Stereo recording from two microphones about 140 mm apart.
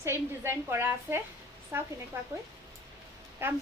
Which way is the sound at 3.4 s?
15° right (ahead or behind).